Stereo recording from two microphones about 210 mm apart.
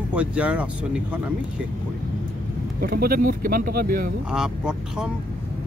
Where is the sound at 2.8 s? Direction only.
45° right (ahead or behind).